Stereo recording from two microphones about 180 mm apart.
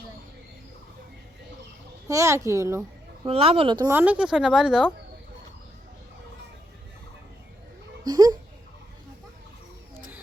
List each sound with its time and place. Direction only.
2.0 s a child's voice: 15° right (ahead or behind)
3.2 s speech: 30° right (ahead or behind)
3.8 s speech: 10° right (ahead or behind)
8.0 s a sound: 20° right (ahead or behind)